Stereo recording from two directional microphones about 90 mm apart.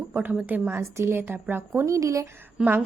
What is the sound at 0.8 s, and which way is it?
A woman's voice, 30° right (ahead or behind).